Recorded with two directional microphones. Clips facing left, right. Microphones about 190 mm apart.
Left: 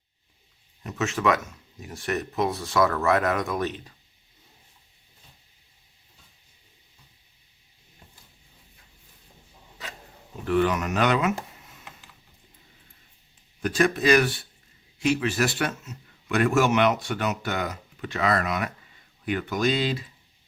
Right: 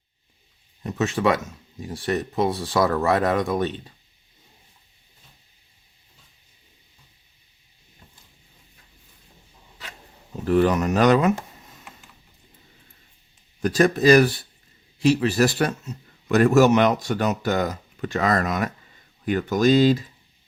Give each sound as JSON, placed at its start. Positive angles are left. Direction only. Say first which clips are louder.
{"t": 0.8, "sound": "a man's voice", "louder": "right 4 dB", "side_deg": -35}
{"t": 10.4, "sound": "a man's voice", "louder": "right 4 dB", "side_deg": -35}
{"t": 13.6, "sound": "a man's voice", "louder": "right 4 dB", "side_deg": -40}